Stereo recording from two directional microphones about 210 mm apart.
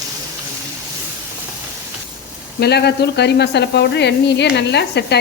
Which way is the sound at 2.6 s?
50° left (ahead or behind).